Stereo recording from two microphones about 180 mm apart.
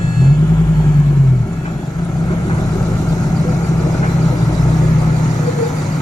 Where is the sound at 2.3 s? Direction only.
20° left (ahead or behind).